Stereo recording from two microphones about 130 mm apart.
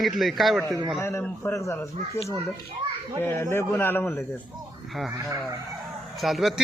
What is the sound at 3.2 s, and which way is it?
A man's voice, 20° left (ahead or behind).